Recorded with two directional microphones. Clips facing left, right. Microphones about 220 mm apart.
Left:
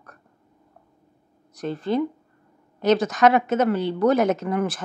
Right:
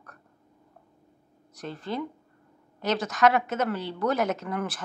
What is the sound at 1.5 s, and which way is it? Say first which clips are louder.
Speech: left 9 dB; 20° left (ahead or behind).